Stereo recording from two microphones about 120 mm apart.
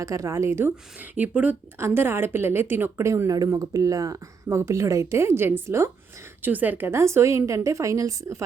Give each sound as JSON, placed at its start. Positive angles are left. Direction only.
{"t": 0.0, "sound": "a woman's voice", "side_deg": -25}